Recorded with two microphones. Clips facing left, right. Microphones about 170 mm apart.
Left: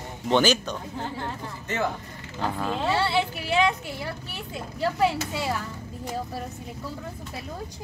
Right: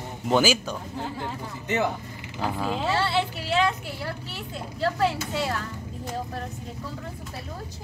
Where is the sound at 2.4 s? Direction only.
5° right (ahead or behind).